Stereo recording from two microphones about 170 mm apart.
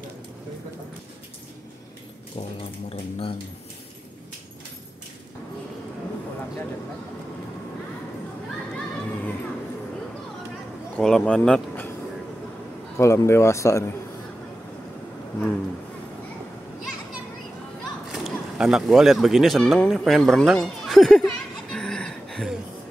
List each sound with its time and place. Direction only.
2.9 s speech: 35° left (ahead or behind)
11.0 s speech: 5° left (ahead or behind)
12.9 s speech: 15° left (ahead or behind)
18.1 s a sound: centre (ahead or behind)